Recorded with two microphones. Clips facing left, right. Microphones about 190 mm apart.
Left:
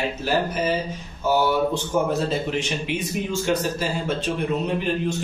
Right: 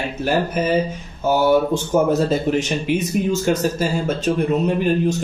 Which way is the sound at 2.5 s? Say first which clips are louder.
Right 6 dB; 45° right (ahead or behind).